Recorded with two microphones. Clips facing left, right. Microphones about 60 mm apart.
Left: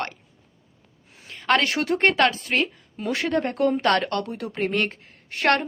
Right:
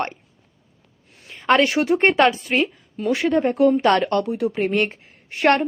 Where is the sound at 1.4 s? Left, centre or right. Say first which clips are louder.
Right 4 dB; centre.